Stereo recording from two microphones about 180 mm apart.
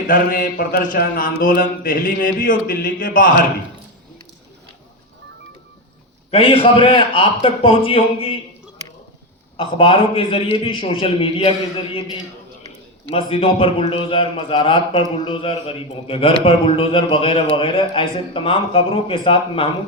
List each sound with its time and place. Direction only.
0.1 s speech: 55° left (ahead or behind)
6.3 s a man's voice: 30° left (ahead or behind)
9.6 s a man's voice: 30° left (ahead or behind)
13.1 s a man's voice: 30° left (ahead or behind)